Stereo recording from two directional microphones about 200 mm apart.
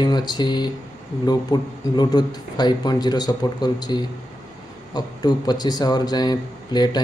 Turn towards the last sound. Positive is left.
turn(degrees=20)  # may be behind; listen again after turning